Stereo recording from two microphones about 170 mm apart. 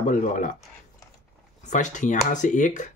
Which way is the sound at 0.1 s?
50° left (ahead or behind).